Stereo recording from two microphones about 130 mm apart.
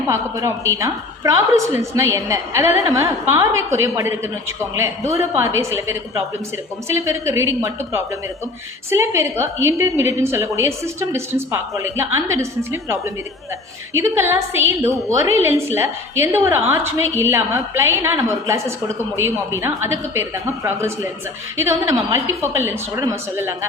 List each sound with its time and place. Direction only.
0.1 s a woman's voice: 25° right (ahead or behind)